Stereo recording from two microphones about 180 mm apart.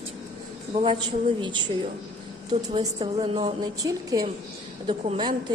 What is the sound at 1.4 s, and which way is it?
A woman's voice, 25° right (ahead or behind).